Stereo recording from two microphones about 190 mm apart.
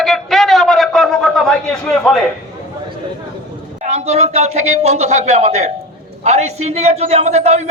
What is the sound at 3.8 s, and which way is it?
A man's voice, 35° right (ahead or behind).